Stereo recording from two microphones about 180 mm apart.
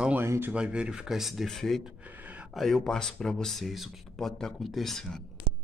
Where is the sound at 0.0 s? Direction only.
10° right (ahead or behind).